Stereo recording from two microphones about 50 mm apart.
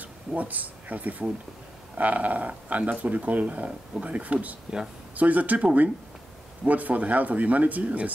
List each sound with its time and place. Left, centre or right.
0.0 s speech: right